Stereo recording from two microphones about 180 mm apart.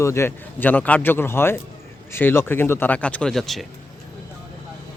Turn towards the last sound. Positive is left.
turn(degrees=0)  # may be behind; listen again after turning